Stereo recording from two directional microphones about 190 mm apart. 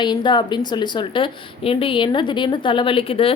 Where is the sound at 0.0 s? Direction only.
25° left (ahead or behind).